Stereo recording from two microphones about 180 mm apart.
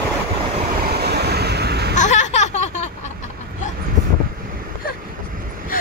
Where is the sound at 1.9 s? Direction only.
40° left (ahead or behind).